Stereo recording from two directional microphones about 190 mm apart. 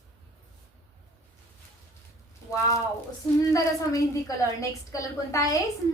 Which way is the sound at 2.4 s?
15° left (ahead or behind).